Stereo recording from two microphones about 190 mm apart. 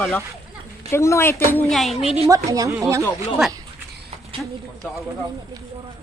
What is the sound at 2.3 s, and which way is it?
Speech, 20° right (ahead or behind).